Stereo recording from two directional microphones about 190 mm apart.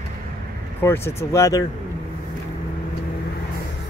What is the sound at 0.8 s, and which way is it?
Speech, 15° left (ahead or behind).